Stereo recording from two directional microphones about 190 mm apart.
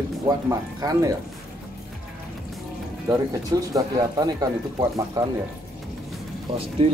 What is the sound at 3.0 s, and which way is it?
Speech, 15° right (ahead or behind).